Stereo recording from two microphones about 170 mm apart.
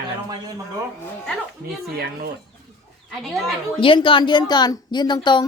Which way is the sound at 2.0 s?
70° right (ahead or behind).